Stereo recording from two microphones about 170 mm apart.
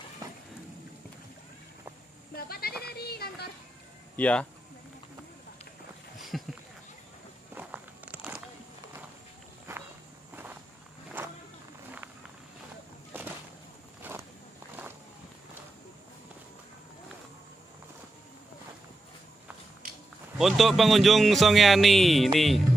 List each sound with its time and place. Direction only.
0.2 s vehicle: 20° right (ahead or behind)
2.3 s a sound: 65° left (ahead or behind)
2.8 s music: 70° left (ahead or behind)
4.2 s speech: 5° left (ahead or behind)
6.3 s a sound: centre (ahead or behind)
7.5 s walk: 10° right (ahead or behind)
10.3 s walk: 10° right (ahead or behind)
13.1 s a sound: 10° right (ahead or behind)
20.3 s speech: centre (ahead or behind)